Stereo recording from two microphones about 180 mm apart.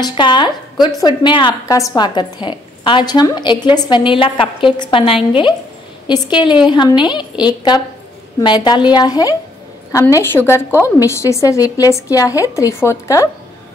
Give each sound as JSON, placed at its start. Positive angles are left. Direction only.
{"t": 0.0, "sound": "a woman's voice", "side_deg": 25}